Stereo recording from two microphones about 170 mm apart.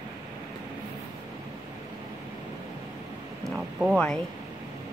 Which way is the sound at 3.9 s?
5° left (ahead or behind).